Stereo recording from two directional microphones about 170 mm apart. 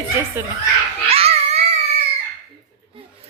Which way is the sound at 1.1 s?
35° right (ahead or behind).